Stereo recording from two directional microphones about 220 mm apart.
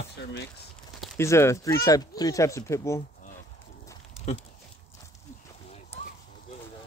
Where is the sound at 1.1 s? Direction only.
10° left (ahead or behind).